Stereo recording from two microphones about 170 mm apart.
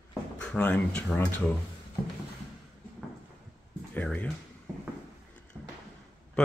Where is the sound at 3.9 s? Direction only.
10° left (ahead or behind).